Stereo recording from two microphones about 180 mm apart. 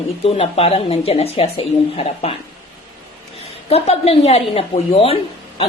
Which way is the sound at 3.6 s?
35° left (ahead or behind).